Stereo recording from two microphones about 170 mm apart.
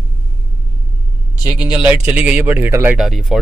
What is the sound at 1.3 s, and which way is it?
Speech, 25° left (ahead or behind).